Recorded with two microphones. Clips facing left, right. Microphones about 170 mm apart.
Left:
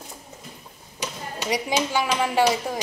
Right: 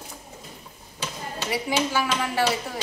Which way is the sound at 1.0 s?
15° left (ahead or behind).